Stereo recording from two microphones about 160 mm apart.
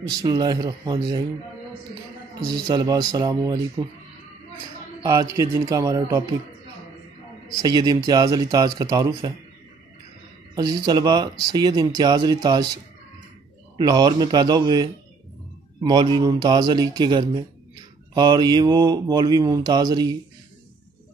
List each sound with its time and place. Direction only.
0.2 s speech: 25° right (ahead or behind)
2.4 s speech: 25° right (ahead or behind)
5.0 s speech: 20° right (ahead or behind)
7.6 s speech: 25° right (ahead or behind)
10.5 s a man's voice: 25° right (ahead or behind)
13.7 s speech: 25° right (ahead or behind)